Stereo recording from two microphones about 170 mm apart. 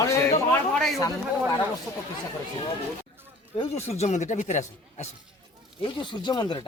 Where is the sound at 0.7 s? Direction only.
Centre (ahead or behind).